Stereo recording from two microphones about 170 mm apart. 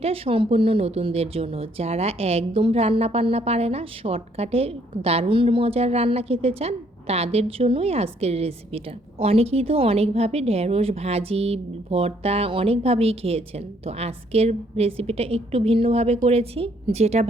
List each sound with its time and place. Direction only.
0.0 s speech: 35° right (ahead or behind)